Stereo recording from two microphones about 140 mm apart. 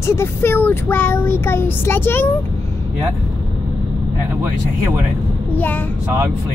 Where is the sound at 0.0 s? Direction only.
20° left (ahead or behind).